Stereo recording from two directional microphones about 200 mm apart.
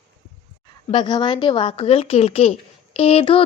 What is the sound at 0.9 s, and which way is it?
Speech, 20° left (ahead or behind).